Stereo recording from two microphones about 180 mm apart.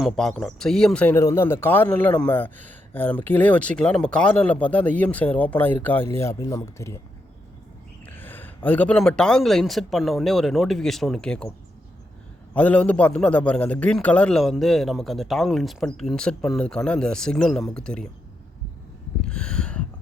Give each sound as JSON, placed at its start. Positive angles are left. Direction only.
{"t": 0.0, "sound": "a man's voice", "side_deg": 0}
{"t": 8.0, "sound": "a man's voice", "side_deg": 10}
{"t": 12.5, "sound": "a man's voice", "side_deg": 10}
{"t": 19.2, "sound": "a sound", "side_deg": 5}